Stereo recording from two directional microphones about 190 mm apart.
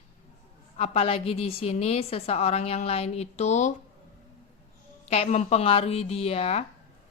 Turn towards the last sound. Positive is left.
turn(degrees=30)  # may be behind; listen again after turning